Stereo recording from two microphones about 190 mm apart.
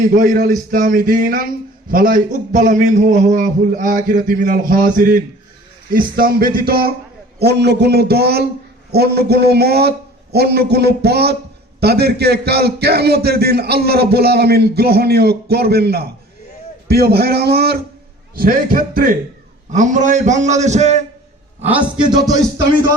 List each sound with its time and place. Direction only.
0.1 s a man's voice: 45° right (ahead or behind)
22.1 s music: 20° right (ahead or behind)